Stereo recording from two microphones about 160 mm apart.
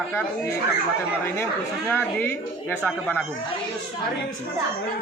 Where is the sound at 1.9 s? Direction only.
15° left (ahead or behind).